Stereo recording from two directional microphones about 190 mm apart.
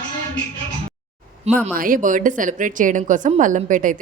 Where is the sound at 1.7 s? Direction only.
45° right (ahead or behind).